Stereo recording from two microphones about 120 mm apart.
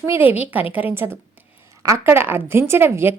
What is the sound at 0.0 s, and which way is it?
A woman's voice, 15° right (ahead or behind).